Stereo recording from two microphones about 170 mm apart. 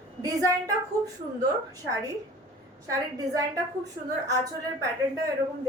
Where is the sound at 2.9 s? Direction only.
20° right (ahead or behind).